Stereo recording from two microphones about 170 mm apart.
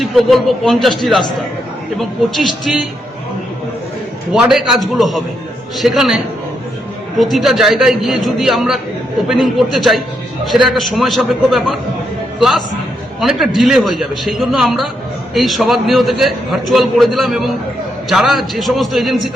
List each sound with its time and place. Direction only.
0.0 s a man's voice: centre (ahead or behind)
4.3 s a man's voice: 5° right (ahead or behind)